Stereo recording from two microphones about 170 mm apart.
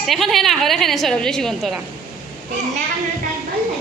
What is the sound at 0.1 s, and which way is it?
A woman's voice, centre (ahead or behind).